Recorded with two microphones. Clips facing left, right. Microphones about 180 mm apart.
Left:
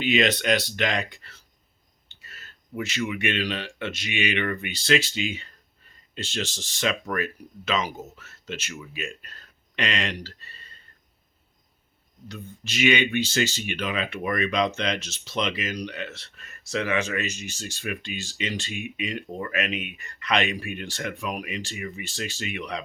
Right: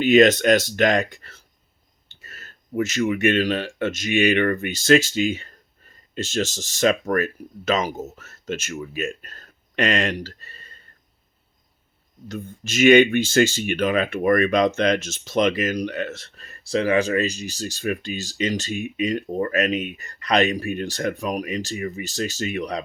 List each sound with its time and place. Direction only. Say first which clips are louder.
0.0 s speech: right 8 dB; 45° right (ahead or behind)
12.3 s speech: right 6 dB; 45° right (ahead or behind)